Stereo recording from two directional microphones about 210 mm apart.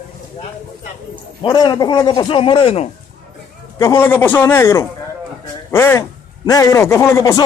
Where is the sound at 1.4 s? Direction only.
20° left (ahead or behind).